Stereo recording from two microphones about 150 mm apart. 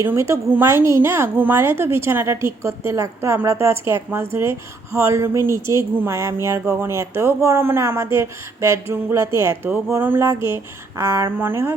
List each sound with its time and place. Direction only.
0.0 s a woman's voice: 15° right (ahead or behind)